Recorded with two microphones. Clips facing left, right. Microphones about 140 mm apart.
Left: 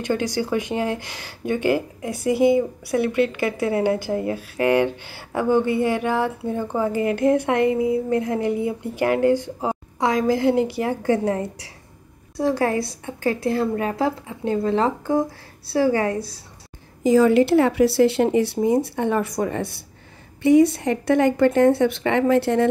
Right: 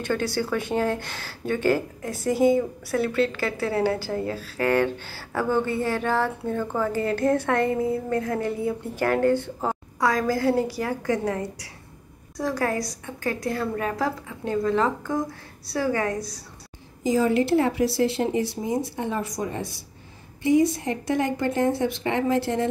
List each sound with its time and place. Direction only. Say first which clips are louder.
0.0 s a woman's voice: left 2 dB; 15° left (ahead or behind)
17.0 s a woman's voice: left 6 dB; 70° left (ahead or behind)